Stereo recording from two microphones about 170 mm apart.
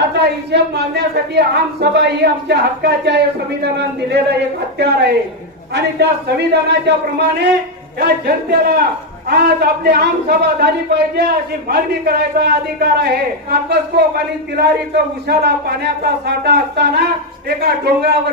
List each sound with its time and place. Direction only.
0.0 s a woman's voice: 80° right
8.0 s a man's voice: 70° right (ahead or behind)